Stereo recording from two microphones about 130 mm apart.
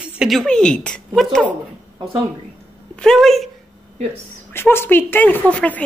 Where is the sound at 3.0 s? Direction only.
5° left (ahead or behind).